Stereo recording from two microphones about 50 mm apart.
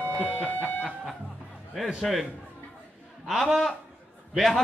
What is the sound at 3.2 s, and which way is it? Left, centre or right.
Speech, centre.